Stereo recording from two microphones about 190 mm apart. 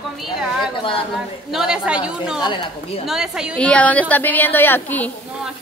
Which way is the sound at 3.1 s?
5° right (ahead or behind).